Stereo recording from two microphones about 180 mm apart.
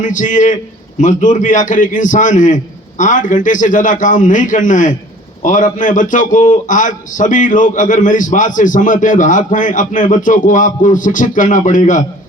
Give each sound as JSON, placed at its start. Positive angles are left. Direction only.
{"t": 0.0, "sound": "a man's voice", "side_deg": 45}